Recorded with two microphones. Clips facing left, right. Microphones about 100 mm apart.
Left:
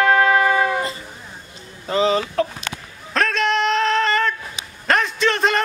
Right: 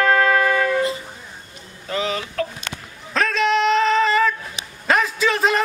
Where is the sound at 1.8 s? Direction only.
30° left (ahead or behind).